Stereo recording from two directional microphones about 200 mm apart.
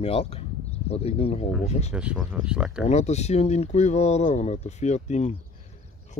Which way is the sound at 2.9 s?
35° left (ahead or behind).